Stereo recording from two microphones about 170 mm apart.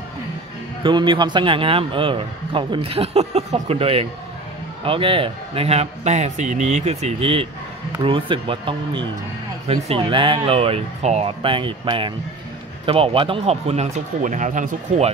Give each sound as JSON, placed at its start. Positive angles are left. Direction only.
{"t": 0.8, "sound": "a man's voice", "side_deg": -30}